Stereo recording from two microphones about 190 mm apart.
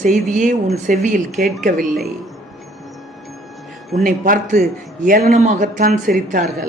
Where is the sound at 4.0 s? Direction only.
40° right (ahead or behind).